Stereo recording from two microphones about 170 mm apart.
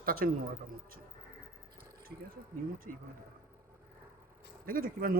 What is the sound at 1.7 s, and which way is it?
Speech, 60° right (ahead or behind).